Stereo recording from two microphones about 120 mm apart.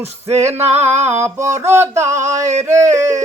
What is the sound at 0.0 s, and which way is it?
Music, 60° right (ahead or behind).